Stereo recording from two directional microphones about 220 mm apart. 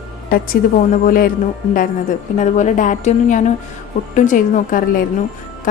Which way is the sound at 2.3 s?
35° left (ahead or behind).